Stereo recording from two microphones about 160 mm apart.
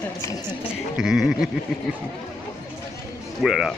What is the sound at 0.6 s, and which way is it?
Sheep, 5° right (ahead or behind).